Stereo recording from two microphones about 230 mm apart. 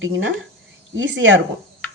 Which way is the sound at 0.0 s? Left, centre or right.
Right.